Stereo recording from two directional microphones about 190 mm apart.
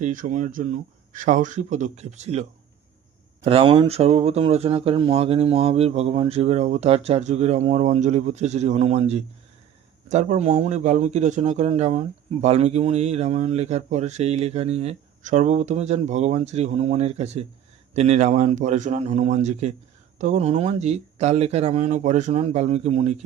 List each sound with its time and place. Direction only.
0.0 s a man's voice: 40° right (ahead or behind)